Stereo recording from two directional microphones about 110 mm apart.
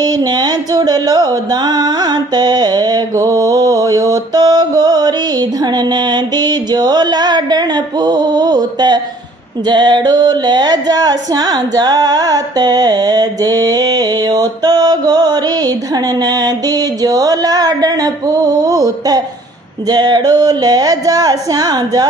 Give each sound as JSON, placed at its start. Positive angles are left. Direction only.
{"t": 0.0, "sound": "music", "side_deg": -35}